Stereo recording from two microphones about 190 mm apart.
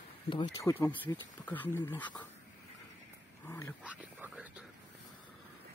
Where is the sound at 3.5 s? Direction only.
15° left (ahead or behind).